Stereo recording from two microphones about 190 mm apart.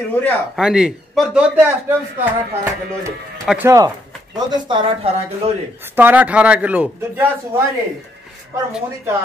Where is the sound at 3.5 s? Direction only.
10° right (ahead or behind).